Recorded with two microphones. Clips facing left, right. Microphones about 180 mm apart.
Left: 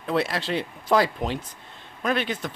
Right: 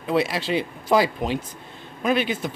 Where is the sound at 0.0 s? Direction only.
5° right (ahead or behind).